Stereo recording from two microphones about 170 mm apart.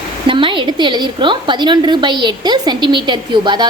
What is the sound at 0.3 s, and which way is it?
A woman's voice, 30° right (ahead or behind).